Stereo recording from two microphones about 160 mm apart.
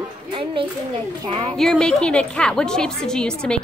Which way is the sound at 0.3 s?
30° right (ahead or behind).